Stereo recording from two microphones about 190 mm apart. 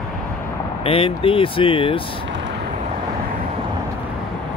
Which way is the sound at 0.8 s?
30° left (ahead or behind).